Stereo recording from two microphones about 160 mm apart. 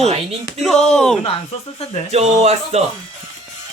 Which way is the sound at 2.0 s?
45° right (ahead or behind).